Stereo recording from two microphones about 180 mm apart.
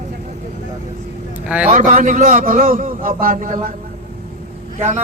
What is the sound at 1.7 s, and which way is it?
A man's voice, 45° right (ahead or behind).